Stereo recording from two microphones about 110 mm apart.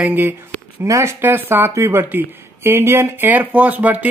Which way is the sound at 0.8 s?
25° right (ahead or behind).